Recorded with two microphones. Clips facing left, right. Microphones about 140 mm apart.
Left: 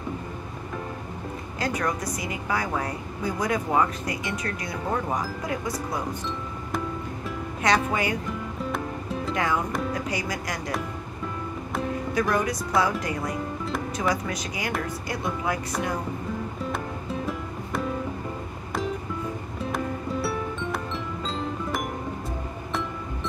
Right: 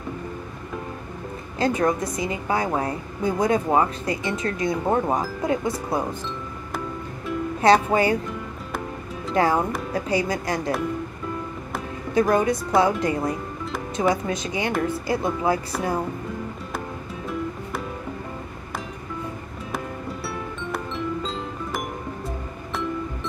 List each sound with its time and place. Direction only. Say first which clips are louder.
1.6 s a woman's voice: right 6 dB; 25° right (ahead or behind)
7.6 s speech: right 6 dB; 30° right (ahead or behind)
9.3 s a woman's voice: right 6 dB; 30° right (ahead or behind)
12.1 s a woman's voice: right 7 dB; 25° right (ahead or behind)
19.7 s music: left 2 dB; centre (ahead or behind)